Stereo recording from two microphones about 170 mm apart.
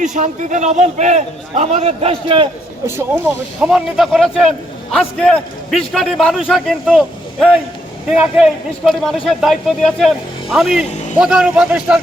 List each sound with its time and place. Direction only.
0.0 s a man's voice: 45° right (ahead or behind); by 2.5 s 30° right (ahead or behind)
2.8 s speech: 15° right (ahead or behind)
3.7 s speech: centre (ahead or behind)